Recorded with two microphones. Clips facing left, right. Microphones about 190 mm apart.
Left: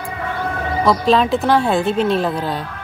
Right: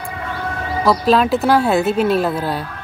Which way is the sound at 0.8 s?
5° right (ahead or behind).